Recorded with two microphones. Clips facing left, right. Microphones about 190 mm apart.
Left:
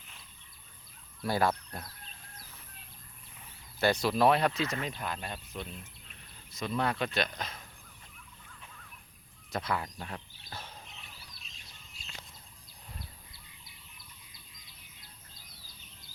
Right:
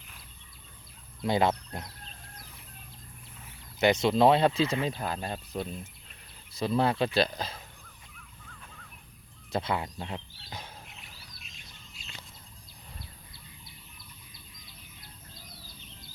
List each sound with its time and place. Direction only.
1.2 s speech: 20° right (ahead or behind)
3.8 s speech: 20° right (ahead or behind)
9.5 s speech: 25° right (ahead or behind)